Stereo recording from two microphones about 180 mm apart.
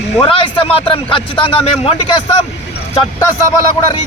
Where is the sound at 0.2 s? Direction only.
30° left (ahead or behind).